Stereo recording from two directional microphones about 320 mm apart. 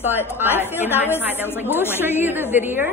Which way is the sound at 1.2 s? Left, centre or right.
Centre.